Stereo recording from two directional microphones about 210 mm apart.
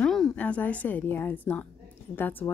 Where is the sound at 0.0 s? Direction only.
Centre (ahead or behind).